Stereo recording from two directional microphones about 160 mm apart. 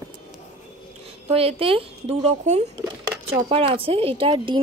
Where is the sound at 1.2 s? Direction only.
35° right (ahead or behind).